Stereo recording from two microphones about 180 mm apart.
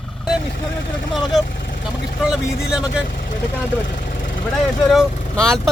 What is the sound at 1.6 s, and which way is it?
Vehicle, 65° left (ahead or behind).